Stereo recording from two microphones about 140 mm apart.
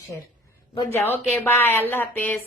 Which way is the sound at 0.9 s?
15° left (ahead or behind).